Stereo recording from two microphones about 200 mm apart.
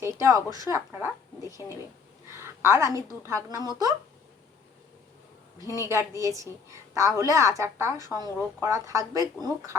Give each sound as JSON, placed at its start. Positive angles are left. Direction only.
{"t": 0.0, "sound": "a woman's voice", "side_deg": -15}
{"t": 5.8, "sound": "a woman's voice", "side_deg": -15}